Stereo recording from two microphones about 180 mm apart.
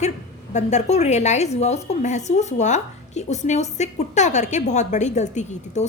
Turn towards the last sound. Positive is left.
turn(degrees=40)  # may be behind; listen again after turning